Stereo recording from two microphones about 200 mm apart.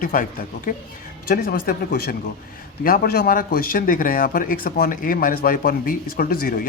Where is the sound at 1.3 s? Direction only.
50° left (ahead or behind).